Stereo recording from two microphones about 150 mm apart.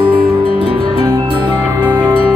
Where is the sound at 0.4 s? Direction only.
35° right (ahead or behind).